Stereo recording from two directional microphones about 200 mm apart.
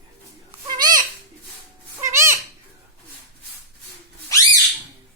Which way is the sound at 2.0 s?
15° right (ahead or behind).